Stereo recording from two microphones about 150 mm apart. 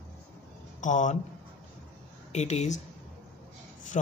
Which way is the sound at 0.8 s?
55° left (ahead or behind).